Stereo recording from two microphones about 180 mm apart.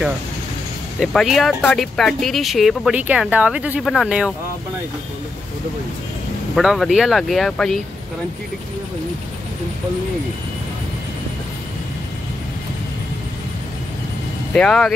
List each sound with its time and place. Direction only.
0.9 s speech: centre (ahead or behind)
6.5 s speech: centre (ahead or behind)
14.5 s speech: 5° left (ahead or behind)